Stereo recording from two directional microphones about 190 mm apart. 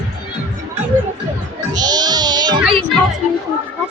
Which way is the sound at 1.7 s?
20° right (ahead or behind).